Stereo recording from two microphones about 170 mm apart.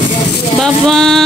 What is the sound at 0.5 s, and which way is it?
Speech, centre (ahead or behind).